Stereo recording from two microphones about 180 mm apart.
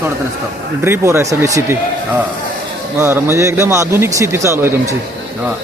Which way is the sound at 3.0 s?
15° right (ahead or behind).